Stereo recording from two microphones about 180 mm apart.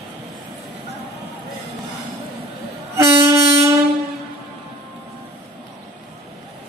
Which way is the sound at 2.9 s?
15° right (ahead or behind).